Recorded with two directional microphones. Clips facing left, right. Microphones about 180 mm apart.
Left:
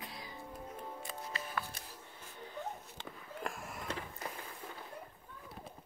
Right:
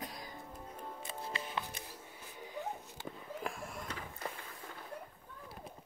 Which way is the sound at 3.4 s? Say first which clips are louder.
Even; centre (ahead or behind).